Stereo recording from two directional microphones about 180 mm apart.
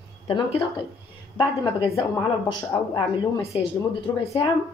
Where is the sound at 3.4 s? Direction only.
35° left (ahead or behind).